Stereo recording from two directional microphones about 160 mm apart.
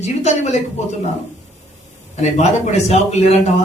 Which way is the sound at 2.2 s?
45° left (ahead or behind).